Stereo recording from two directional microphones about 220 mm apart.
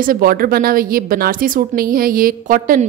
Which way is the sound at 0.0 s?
40° right (ahead or behind).